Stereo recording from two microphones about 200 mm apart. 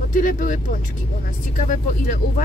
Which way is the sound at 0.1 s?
40° left (ahead or behind).